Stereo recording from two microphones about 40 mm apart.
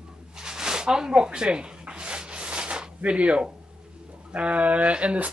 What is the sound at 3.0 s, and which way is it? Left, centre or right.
Speech, right.